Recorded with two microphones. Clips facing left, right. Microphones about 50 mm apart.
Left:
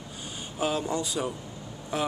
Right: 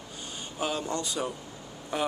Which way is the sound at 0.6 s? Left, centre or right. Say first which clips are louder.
Left 3 dB; centre.